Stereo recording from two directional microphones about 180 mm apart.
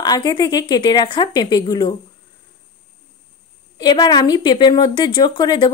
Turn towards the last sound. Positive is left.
turn(degrees=25)  # may be behind; listen again after turning